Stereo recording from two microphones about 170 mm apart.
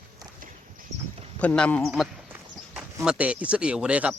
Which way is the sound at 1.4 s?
5° left (ahead or behind).